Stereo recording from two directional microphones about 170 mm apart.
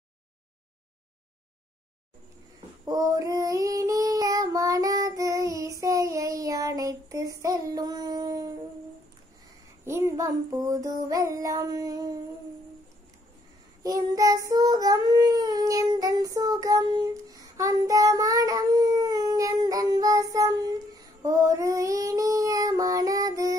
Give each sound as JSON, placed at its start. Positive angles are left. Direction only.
{"t": 2.8, "sound": "female singing", "side_deg": -20}
{"t": 9.8, "sound": "child singing", "side_deg": -15}
{"t": 13.8, "sound": "child singing", "side_deg": -20}